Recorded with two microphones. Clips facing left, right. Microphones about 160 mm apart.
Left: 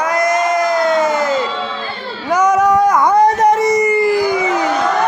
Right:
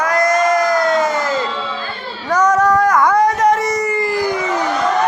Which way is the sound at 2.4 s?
20° left (ahead or behind).